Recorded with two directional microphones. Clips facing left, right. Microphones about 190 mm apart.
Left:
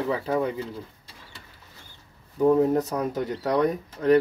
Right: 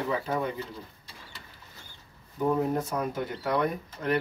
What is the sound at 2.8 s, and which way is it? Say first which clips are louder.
Speech: left 4 dB; 40° left (ahead or behind).